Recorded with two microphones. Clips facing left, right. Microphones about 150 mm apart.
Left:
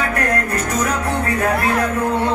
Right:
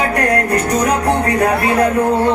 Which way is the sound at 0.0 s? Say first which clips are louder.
Right 4 dB; 35° right (ahead or behind).